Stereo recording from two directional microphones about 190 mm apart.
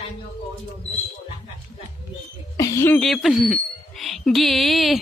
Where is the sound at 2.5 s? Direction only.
15° left (ahead or behind).